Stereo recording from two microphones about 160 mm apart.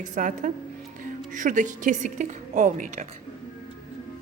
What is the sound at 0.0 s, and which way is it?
A woman's voice, 55° right (ahead or behind).